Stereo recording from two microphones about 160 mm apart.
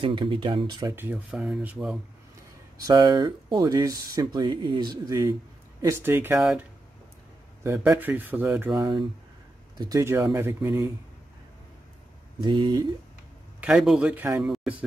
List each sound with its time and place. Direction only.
0.0 s speech: 30° right (ahead or behind)
0.9 s speech: 15° right (ahead or behind)
1.3 s speech: 5° right (ahead or behind)
2.8 s speech: 25° right (ahead or behind); by 6.6 s 10° right (ahead or behind)
7.6 s speech: 15° right (ahead or behind)
12.4 s speech: 30° right (ahead or behind)
13.6 s speech: 5° right (ahead or behind)
14.4 s speech: centre (ahead or behind)